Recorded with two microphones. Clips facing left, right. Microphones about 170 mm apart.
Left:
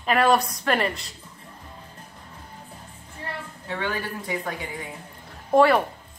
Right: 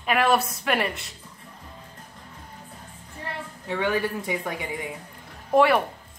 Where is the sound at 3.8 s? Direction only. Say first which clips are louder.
Right 5 dB; 15° right (ahead or behind).